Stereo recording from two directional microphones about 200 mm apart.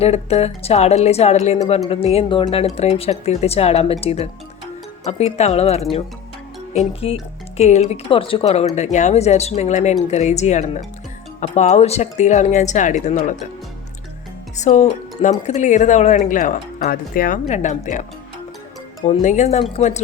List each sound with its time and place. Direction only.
0.0 s speech: 30° left (ahead or behind)
14.5 s speech: 35° left (ahead or behind)
19.0 s speech: 40° left (ahead or behind)